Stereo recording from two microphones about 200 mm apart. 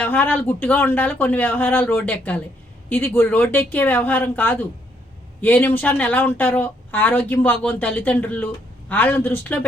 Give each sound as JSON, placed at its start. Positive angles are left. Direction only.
{"t": 0.0, "sound": "speech", "side_deg": 10}